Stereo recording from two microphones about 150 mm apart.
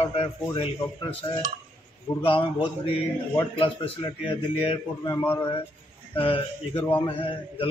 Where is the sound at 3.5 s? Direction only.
35° left (ahead or behind).